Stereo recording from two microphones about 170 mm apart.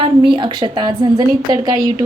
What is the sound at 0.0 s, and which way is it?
A woman's voice, 30° right (ahead or behind).